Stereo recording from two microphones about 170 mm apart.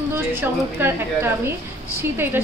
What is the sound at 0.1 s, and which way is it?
Speech, 15° right (ahead or behind).